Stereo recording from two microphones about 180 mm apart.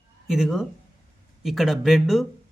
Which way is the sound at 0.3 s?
5° right (ahead or behind).